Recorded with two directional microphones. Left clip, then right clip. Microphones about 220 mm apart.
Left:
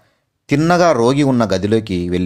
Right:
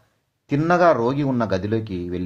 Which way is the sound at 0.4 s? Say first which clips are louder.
Left 4 dB; 35° left (ahead or behind).